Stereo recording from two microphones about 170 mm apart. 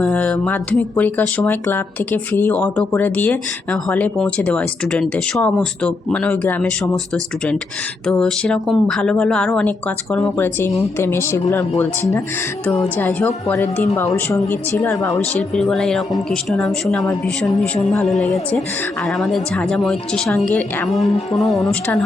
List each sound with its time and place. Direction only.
0.0 s a woman's voice: 10° left (ahead or behind)